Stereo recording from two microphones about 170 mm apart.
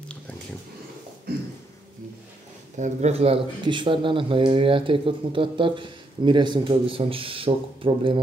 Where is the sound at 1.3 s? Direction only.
60° right (ahead or behind).